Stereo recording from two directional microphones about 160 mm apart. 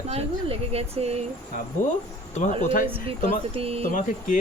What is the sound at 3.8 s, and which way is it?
Speech, 55° left (ahead or behind).